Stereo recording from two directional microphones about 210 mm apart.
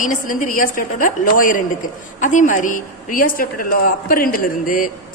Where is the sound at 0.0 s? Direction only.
40° left (ahead or behind).